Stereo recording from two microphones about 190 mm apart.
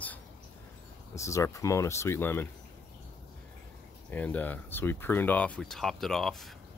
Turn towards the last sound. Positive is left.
turn(degrees=0)  # may be behind; listen again after turning